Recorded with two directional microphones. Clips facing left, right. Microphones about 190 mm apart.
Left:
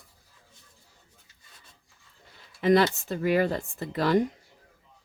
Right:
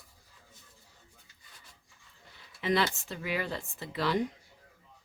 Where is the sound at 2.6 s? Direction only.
45° left (ahead or behind).